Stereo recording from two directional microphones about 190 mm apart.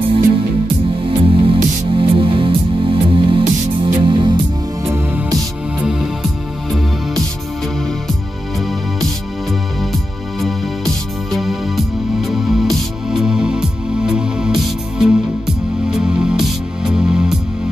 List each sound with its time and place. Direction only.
1.0 s music: 25° right (ahead or behind)
4.8 s music: 15° right (ahead or behind)
11.3 s music: centre (ahead or behind)